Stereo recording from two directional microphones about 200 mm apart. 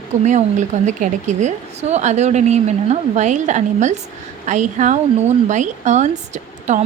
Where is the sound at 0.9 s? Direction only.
40° right (ahead or behind).